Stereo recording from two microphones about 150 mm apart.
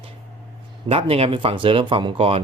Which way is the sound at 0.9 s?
40° right (ahead or behind).